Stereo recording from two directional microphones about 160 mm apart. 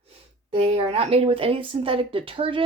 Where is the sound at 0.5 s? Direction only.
40° right (ahead or behind).